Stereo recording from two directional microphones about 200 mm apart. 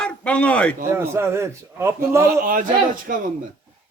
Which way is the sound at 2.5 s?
45° right (ahead or behind).